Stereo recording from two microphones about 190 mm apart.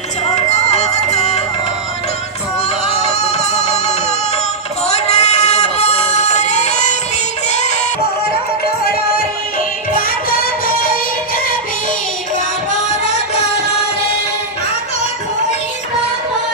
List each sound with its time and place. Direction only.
0.5 s music: 35° left (ahead or behind)
3.1 s music: 35° left (ahead or behind)
4.8 s a sound: 35° left (ahead or behind)
10.0 s music: 50° left (ahead or behind)